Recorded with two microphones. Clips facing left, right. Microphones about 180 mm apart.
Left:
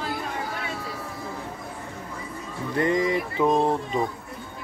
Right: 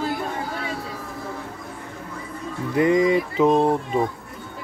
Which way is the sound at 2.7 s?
15° right (ahead or behind).